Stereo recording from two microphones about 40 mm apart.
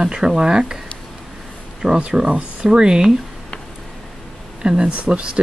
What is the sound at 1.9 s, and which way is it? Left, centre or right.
Speech, right.